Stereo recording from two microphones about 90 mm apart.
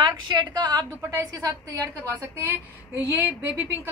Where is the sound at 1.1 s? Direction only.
40° right (ahead or behind).